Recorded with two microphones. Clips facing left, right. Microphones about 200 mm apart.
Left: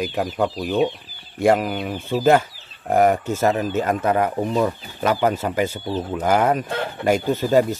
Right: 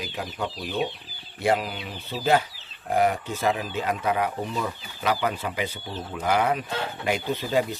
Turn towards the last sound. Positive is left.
turn(degrees=45)  # may be behind; listen again after turning